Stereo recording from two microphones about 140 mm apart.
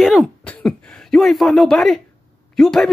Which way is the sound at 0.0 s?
Centre (ahead or behind).